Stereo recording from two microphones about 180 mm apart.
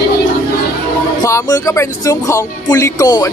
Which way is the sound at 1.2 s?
20° left (ahead or behind).